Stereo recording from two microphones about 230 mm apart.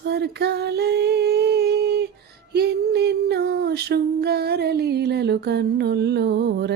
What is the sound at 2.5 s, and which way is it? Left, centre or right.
Female singing, right.